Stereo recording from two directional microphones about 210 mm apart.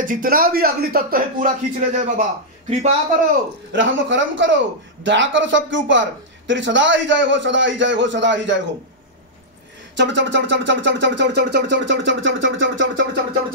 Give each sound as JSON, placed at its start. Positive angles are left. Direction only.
{"t": 0.0, "sound": "a man's voice", "side_deg": -40}
{"t": 3.7, "sound": "speech", "side_deg": -60}
{"t": 9.9, "sound": "speech", "side_deg": -60}